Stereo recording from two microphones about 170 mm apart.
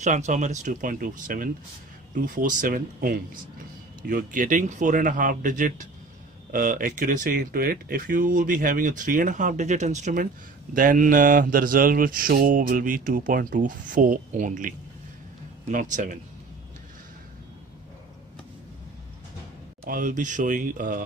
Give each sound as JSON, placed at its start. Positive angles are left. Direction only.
{"t": 0.0, "sound": "speech", "side_deg": -45}
{"t": 15.7, "sound": "speech", "side_deg": -50}
{"t": 19.8, "sound": "speech", "side_deg": -50}